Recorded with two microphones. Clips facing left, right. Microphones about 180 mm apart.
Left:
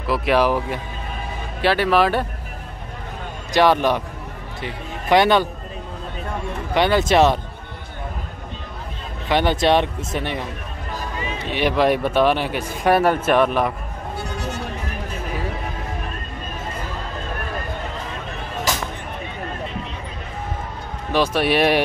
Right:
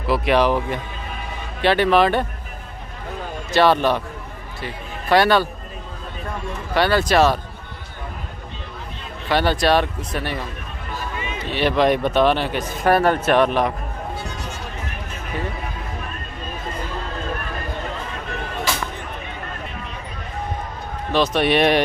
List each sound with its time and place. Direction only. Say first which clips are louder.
0.0 s a man's voice: right 1 dB; centre (ahead or behind)
3.5 s a man's voice: even; 15° left (ahead or behind)
6.7 s speech: left 1 dB; 20° left (ahead or behind)
9.3 s speech: left 1 dB; 20° left (ahead or behind)
11.0 s music: left 1 dB; 35° left (ahead or behind)
11.5 s speech: even; 10° left (ahead or behind)
21.1 s speech: right 1 dB; 10° left (ahead or behind)